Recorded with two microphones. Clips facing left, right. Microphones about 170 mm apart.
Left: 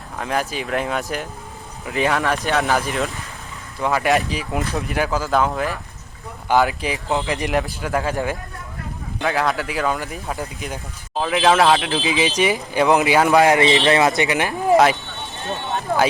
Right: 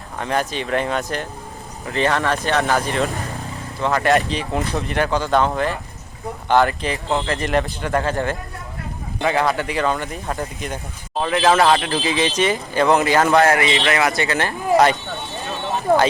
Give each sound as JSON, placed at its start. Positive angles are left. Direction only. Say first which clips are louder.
{"t": 0.2, "sound": "speech", "louder": "right 1 dB", "side_deg": 5}
{"t": 3.8, "sound": "speech", "louder": "right 1 dB", "side_deg": 10}
{"t": 7.5, "sound": "speech", "louder": "right 3 dB", "side_deg": 5}
{"t": 13.6, "sound": "speech", "louder": "left 3 dB", "side_deg": 25}